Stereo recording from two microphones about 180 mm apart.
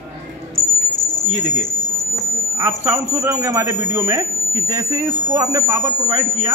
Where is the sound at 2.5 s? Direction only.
15° right (ahead or behind).